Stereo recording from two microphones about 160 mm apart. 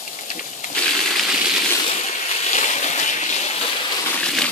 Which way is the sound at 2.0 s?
45° left (ahead or behind).